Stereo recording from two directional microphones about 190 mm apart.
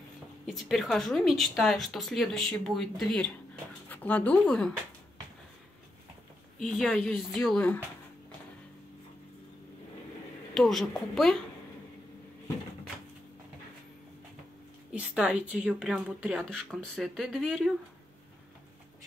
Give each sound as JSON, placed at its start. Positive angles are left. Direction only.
{"t": 0.5, "sound": "speech", "side_deg": 0}
{"t": 6.6, "sound": "speech", "side_deg": 0}
{"t": 10.5, "sound": "speech", "side_deg": 0}
{"t": 14.9, "sound": "speech", "side_deg": -5}